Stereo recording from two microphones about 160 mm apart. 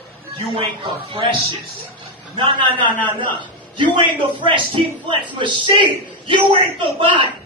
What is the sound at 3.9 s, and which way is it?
A man's voice, 35° right (ahead or behind).